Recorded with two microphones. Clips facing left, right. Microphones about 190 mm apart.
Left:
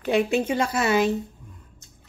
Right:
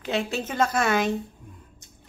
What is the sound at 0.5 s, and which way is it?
Speech, 50° right (ahead or behind).